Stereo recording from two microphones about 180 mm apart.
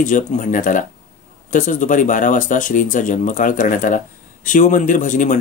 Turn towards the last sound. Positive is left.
turn(degrees=45)  # may be behind; listen again after turning